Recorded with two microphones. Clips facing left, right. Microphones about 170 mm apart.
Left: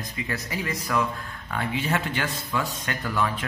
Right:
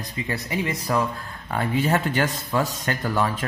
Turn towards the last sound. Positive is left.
turn(degrees=-45)  # may be behind; listen again after turning